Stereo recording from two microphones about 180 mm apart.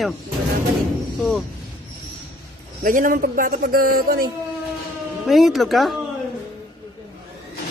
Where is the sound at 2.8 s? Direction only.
50° right (ahead or behind).